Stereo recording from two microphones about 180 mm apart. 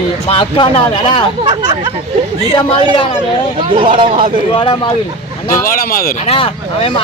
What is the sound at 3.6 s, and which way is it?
Speech, 30° right (ahead or behind).